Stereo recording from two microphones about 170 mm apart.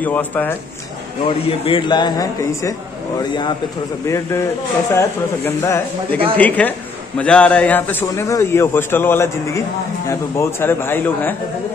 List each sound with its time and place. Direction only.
0.0 s a man's voice: 10° left (ahead or behind)
1.2 s a man's voice: 35° left (ahead or behind); by 11.3 s 10° left (ahead or behind)